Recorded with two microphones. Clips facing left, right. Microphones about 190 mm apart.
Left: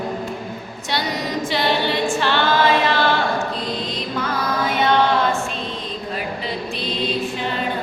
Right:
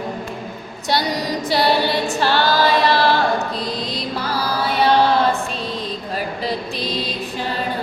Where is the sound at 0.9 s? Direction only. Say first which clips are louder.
Right 4 dB; 40° right (ahead or behind).